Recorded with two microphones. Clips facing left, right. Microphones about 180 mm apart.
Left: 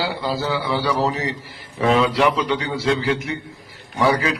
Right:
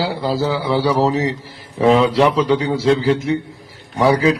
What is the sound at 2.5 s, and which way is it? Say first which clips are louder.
Speech: right 6 dB; 35° right (ahead or behind).